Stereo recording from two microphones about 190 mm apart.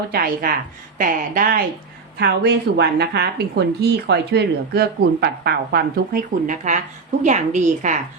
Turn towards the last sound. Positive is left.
turn(degrees=-40)  # may be behind; listen again after turning